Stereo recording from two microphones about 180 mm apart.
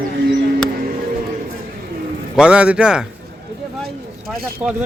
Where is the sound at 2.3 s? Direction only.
5° right (ahead or behind).